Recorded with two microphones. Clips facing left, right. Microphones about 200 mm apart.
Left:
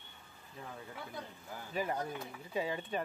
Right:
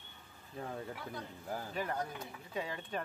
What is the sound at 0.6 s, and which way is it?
Speech, 40° right (ahead or behind).